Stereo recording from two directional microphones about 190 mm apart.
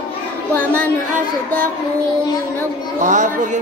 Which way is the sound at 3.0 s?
40° right (ahead or behind).